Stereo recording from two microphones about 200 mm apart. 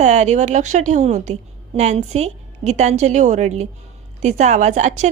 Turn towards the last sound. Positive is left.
turn(degrees=-35)  # may be behind; listen again after turning